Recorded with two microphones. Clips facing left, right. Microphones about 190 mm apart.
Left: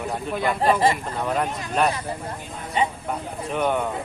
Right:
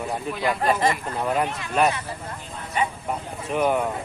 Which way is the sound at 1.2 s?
5° right (ahead or behind).